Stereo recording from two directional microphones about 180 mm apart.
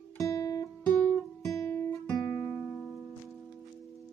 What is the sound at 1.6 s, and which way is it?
Guitar, 15° left (ahead or behind).